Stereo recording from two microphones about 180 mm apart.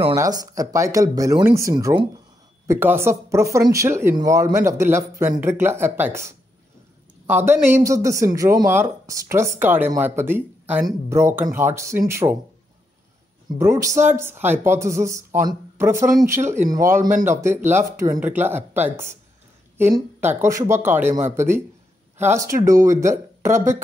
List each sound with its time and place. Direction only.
0.1 s speech: 20° right (ahead or behind)
7.3 s speech: 10° right (ahead or behind)
13.6 s speech: 15° right (ahead or behind)